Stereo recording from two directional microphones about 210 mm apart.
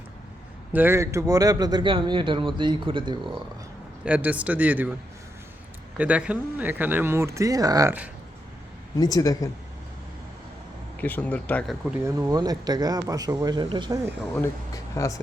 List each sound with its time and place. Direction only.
0.7 s a man's voice: 10° right (ahead or behind)
4.0 s speech: 5° right (ahead or behind)
6.0 s speech: 5° right (ahead or behind)
9.0 s speech: 20° left (ahead or behind)
11.0 s speech: 5° left (ahead or behind)
11.9 s speech: 10° right (ahead or behind)
14.3 s speech: 15° left (ahead or behind)